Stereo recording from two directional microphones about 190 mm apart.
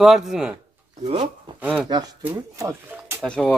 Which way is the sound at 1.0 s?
35° right (ahead or behind).